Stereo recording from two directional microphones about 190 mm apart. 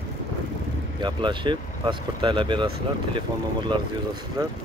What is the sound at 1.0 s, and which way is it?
Speech, 25° right (ahead or behind).